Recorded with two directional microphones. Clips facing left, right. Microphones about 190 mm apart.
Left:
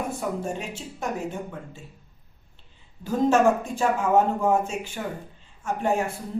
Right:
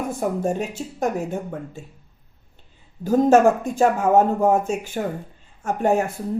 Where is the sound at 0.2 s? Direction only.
45° right (ahead or behind).